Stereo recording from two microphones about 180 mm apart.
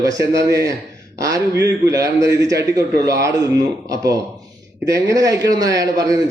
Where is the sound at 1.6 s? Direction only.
70° right (ahead or behind).